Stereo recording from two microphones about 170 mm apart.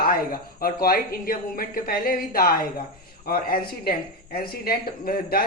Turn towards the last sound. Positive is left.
turn(degrees=60)  # may be behind; listen again after turning